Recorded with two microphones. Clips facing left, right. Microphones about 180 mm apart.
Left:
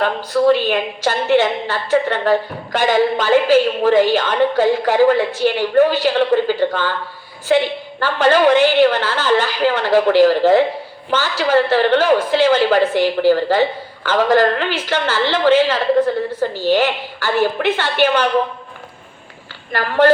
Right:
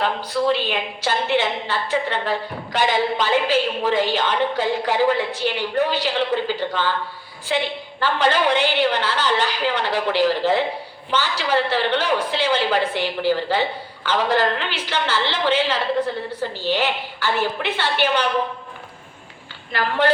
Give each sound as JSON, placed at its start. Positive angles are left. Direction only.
{"t": 0.0, "sound": "a woman's voice", "side_deg": 45}
{"t": 19.7, "sound": "a woman's voice", "side_deg": 45}